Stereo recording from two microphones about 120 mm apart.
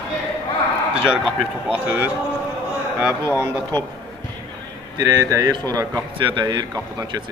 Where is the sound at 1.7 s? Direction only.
10° right (ahead or behind).